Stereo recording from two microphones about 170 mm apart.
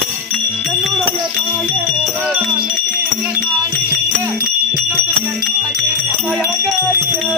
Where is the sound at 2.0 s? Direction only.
Centre (ahead or behind).